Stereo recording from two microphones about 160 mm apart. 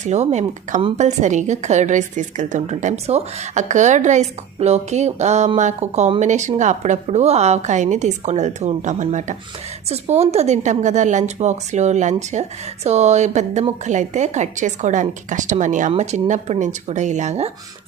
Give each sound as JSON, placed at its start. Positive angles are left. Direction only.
{"t": 0.0, "sound": "a woman's voice", "side_deg": -45}